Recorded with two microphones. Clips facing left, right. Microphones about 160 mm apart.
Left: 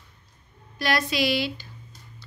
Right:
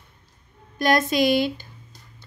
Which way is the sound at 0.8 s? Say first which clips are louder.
Right 5 dB; 45° right (ahead or behind).